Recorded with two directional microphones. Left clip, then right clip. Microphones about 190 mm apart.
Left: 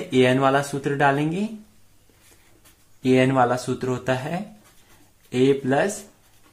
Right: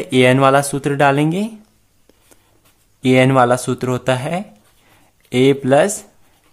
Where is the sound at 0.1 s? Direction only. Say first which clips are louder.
Right 7 dB; 40° right (ahead or behind).